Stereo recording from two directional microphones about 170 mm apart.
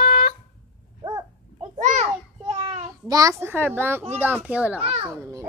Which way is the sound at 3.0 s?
20° right (ahead or behind).